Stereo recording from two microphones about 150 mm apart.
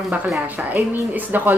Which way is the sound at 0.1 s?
10° right (ahead or behind).